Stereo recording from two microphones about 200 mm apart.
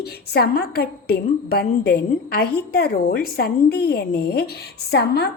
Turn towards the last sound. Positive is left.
turn(degrees=55)  # may be behind; listen again after turning